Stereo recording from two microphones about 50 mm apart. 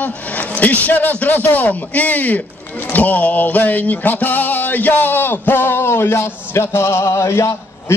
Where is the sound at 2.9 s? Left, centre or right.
Left.